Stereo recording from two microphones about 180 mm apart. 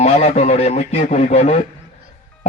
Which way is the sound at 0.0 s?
40° left (ahead or behind).